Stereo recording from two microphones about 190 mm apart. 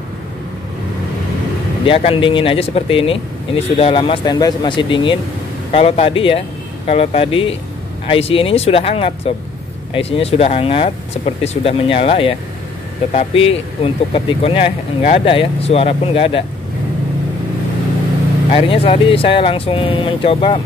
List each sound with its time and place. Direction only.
1.9 s speech: 30° left (ahead or behind)
18.5 s speech: 30° left (ahead or behind)